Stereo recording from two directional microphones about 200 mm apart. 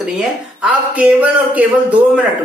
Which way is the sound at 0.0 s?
5° right (ahead or behind).